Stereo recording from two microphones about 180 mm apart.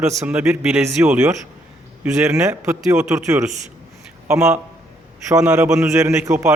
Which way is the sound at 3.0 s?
15° right (ahead or behind).